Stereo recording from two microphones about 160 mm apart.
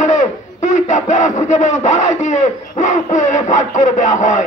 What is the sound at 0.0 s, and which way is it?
Speech, 50° left (ahead or behind).